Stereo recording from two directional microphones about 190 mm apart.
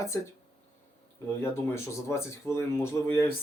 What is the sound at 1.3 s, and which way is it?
Speech, 10° left (ahead or behind).